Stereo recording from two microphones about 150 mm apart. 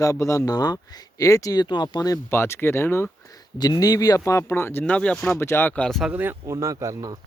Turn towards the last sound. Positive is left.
turn(degrees=-20)  # may be behind; listen again after turning